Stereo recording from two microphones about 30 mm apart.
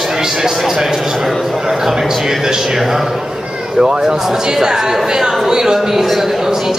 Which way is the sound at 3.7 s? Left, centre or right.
Right.